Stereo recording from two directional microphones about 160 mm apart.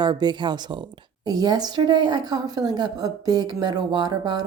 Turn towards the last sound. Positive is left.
turn(degrees=-25)  # may be behind; listen again after turning